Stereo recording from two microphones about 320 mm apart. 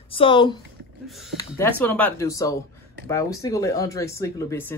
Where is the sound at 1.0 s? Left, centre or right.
Centre.